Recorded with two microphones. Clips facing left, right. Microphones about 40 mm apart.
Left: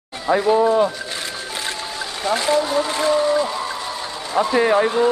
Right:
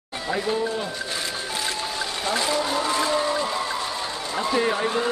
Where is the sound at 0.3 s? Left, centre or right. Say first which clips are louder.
Left 9 dB; left.